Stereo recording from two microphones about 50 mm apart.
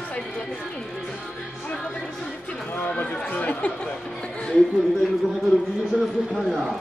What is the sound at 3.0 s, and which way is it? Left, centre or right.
Speech, left.